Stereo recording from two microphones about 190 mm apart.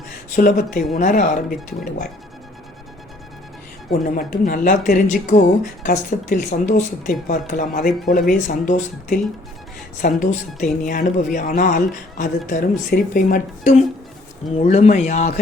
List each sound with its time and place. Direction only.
0.3 s speech: 45° left (ahead or behind)
4.0 s speech: 45° left (ahead or behind)